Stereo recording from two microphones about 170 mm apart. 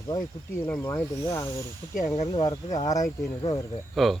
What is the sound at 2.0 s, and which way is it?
Speech, 45° left (ahead or behind).